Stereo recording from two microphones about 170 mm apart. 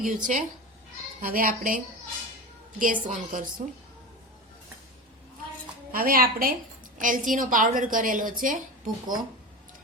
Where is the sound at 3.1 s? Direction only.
50° right (ahead or behind).